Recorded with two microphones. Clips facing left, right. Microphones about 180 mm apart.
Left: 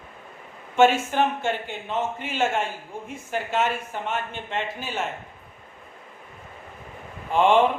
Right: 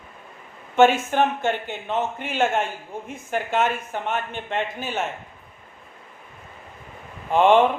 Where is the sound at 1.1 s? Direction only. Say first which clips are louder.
Right 2 dB; 50° right (ahead or behind).